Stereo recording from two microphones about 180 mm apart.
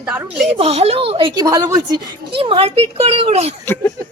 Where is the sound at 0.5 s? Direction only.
35° right (ahead or behind).